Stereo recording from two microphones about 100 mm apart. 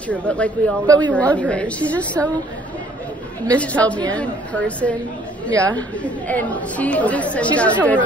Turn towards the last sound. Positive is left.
turn(degrees=15)  # may be behind; listen again after turning